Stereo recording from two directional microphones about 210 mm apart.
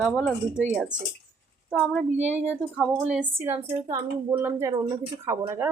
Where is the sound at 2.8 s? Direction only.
5° right (ahead or behind).